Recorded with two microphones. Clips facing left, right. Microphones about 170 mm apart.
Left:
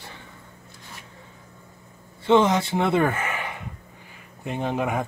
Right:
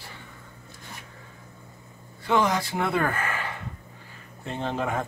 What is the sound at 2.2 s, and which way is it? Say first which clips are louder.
Speech: left 5 dB; 25° left (ahead or behind).